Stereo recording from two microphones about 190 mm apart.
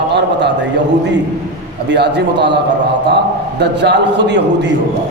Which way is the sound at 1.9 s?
65° right (ahead or behind).